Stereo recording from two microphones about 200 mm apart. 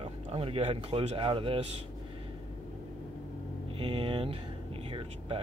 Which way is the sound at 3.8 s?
25° right (ahead or behind).